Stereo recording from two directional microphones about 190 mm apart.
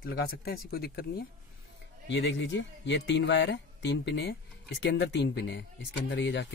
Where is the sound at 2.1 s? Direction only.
70° left (ahead or behind).